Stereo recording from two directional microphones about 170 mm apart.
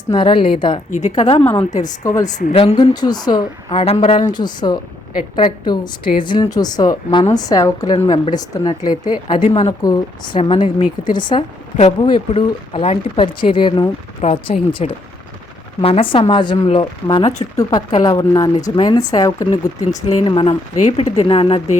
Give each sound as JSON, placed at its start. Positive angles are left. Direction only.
{"t": 0.1, "sound": "a woman's voice", "side_deg": 30}
{"t": 0.9, "sound": "a woman's voice", "side_deg": 45}
{"t": 2.9, "sound": "a woman's voice", "side_deg": 25}
{"t": 4.4, "sound": "a woman's voice", "side_deg": 25}